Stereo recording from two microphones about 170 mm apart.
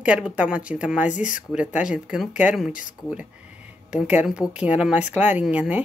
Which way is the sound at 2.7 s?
50° left (ahead or behind).